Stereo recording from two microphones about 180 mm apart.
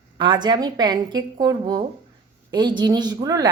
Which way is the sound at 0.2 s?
25° right (ahead or behind).